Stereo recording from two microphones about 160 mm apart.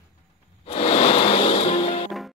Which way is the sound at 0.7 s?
35° left (ahead or behind).